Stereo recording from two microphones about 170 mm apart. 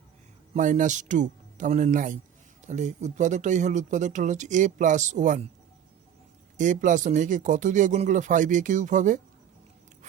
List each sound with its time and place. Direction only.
0.5 s speech: 50° right (ahead or behind)
6.6 s speech: 45° right (ahead or behind)